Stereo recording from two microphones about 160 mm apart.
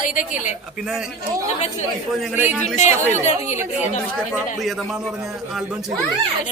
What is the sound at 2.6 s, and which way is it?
Speech, 45° left (ahead or behind).